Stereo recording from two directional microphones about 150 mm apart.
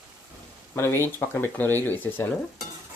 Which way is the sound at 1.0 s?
15° left (ahead or behind).